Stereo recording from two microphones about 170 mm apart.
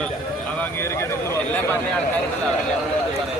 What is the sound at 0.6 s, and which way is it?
Speech, 15° left (ahead or behind).